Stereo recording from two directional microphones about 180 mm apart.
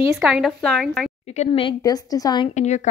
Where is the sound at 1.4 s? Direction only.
25° left (ahead or behind).